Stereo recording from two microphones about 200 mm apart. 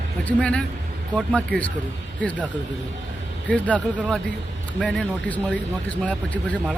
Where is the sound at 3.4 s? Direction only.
5° left (ahead or behind).